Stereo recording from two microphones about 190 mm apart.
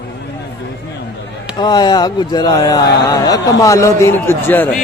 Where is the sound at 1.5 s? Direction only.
20° left (ahead or behind).